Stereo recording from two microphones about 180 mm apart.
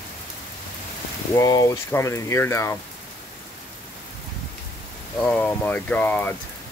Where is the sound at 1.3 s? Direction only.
20° left (ahead or behind).